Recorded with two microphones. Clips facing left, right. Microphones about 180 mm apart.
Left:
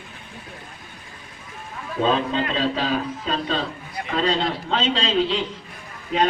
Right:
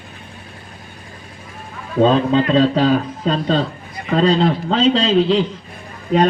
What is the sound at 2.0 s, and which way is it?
A man's voice, 40° right (ahead or behind).